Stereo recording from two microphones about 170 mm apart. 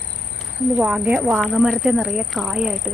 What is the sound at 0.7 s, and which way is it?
Speech, 5° right (ahead or behind).